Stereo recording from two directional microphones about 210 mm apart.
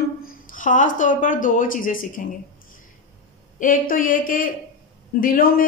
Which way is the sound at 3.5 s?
40° left (ahead or behind).